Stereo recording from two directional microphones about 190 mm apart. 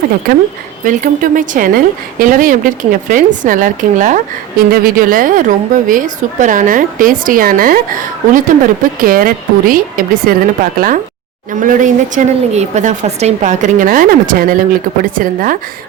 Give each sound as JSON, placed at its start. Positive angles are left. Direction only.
{"t": 0.9, "sound": "a woman's voice", "side_deg": -45}